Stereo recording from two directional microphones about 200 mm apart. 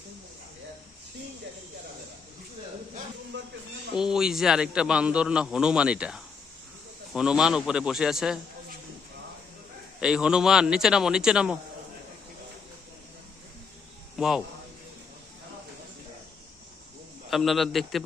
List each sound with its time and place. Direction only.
3.3 s speech: 60° right (ahead or behind)
3.9 s a man's voice: 5° right (ahead or behind)
10.0 s a man's voice: 5° right (ahead or behind)
14.2 s a man's voice: centre (ahead or behind)
17.2 s a man's voice: centre (ahead or behind)